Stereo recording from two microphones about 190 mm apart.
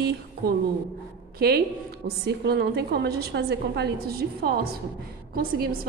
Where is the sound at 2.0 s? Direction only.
60° right (ahead or behind).